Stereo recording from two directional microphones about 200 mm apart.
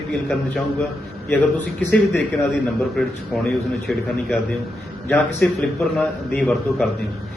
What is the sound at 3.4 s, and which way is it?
A man's voice, centre (ahead or behind).